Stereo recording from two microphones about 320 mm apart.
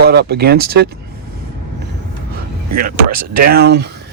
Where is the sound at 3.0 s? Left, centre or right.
Right.